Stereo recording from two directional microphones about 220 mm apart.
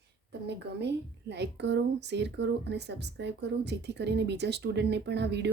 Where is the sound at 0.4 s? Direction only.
50° right (ahead or behind).